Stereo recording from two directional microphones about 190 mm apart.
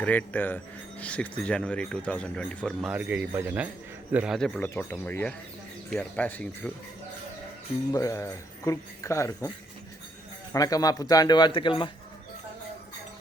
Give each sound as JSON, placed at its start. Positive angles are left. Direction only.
{"t": 0.0, "sound": "speech", "side_deg": 10}
{"t": 4.4, "sound": "speech", "side_deg": 5}
{"t": 7.9, "sound": "speech", "side_deg": 15}
{"t": 10.5, "sound": "a man's voice", "side_deg": 20}